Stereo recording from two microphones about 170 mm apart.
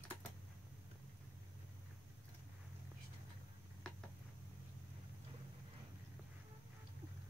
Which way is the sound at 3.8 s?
5° left (ahead or behind).